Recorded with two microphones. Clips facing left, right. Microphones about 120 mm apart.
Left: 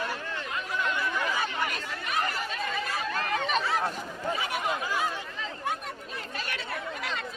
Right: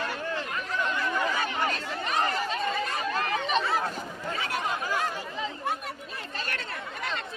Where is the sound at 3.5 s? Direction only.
Centre (ahead or behind).